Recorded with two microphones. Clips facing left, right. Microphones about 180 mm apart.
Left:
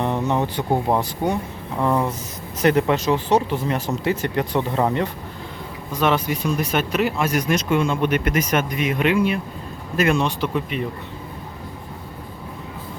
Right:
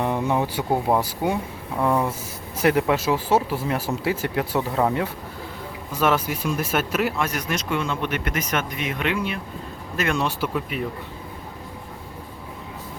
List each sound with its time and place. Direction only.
0.0 s speech: 10° right (ahead or behind)
7.3 s speech: 15° left (ahead or behind)
10.2 s speech: 5° right (ahead or behind)